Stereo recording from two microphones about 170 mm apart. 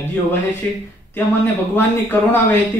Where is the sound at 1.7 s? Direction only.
10° left (ahead or behind).